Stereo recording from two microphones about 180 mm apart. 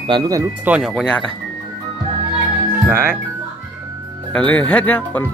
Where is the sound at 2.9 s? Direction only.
15° right (ahead or behind).